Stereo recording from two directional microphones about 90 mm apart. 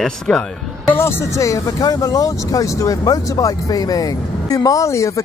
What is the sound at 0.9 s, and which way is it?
Speech, 25° left (ahead or behind).